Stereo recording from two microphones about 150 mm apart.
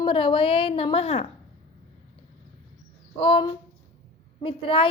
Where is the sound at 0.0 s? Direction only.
35° left (ahead or behind).